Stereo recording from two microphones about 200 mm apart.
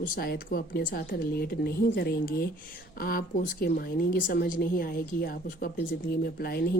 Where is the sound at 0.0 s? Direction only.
50° left (ahead or behind).